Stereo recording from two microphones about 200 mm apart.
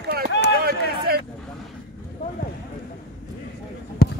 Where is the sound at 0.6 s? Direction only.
50° right (ahead or behind).